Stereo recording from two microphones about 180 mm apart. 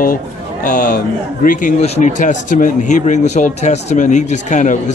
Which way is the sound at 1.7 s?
35° left (ahead or behind).